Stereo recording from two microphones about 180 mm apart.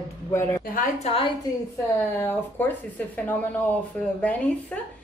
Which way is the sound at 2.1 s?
10° left (ahead or behind).